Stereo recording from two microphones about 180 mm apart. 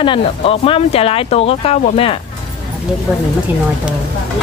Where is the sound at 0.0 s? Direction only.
30° left (ahead or behind).